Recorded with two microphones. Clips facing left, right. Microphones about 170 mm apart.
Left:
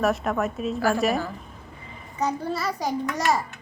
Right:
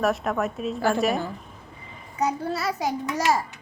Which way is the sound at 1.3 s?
Centre (ahead or behind).